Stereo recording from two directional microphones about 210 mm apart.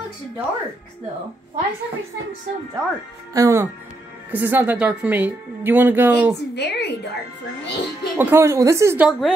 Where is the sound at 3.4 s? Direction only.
15° right (ahead or behind).